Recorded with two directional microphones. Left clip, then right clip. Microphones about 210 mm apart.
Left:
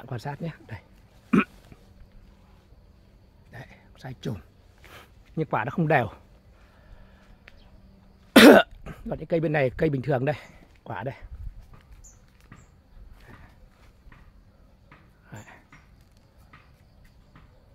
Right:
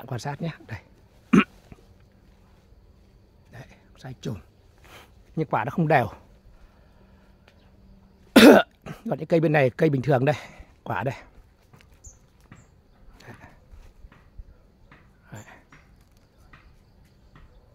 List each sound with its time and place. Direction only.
0.0 s speech: 15° right (ahead or behind)
3.5 s a sound: centre (ahead or behind)
4.9 s speech: 15° right (ahead or behind)
8.3 s cough: 10° right (ahead or behind)
8.8 s speech: 30° right (ahead or behind)
15.2 s a sound: 15° right (ahead or behind)